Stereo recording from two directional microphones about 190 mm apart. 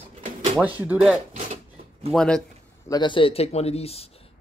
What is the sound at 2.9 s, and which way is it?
Speech, 25° left (ahead or behind).